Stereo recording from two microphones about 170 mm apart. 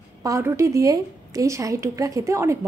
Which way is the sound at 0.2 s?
15° right (ahead or behind).